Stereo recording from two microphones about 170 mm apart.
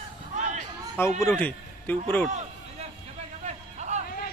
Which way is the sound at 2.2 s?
40° right (ahead or behind).